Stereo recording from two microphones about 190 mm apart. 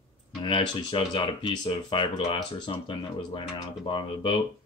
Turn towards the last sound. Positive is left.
turn(degrees=25)  # may be behind; listen again after turning